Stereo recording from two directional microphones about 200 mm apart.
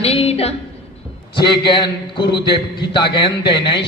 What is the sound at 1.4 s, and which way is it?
A man's voice, 25° left (ahead or behind).